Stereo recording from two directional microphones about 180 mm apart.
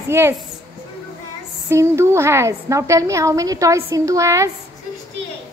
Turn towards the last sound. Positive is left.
turn(degrees=-15)  # may be behind; listen again after turning